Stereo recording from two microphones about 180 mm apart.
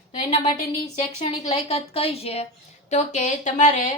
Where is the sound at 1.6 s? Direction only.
30° left (ahead or behind).